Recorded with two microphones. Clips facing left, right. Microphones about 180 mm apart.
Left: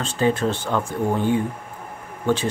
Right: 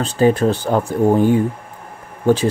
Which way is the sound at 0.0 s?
35° right (ahead or behind).